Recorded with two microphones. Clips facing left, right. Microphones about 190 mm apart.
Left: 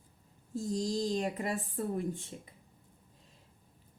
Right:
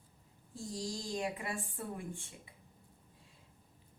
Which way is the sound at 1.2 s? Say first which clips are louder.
Left 5 dB; 40° left (ahead or behind).